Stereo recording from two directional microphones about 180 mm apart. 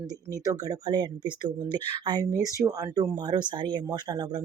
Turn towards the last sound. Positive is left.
turn(degrees=-25)  # may be behind; listen again after turning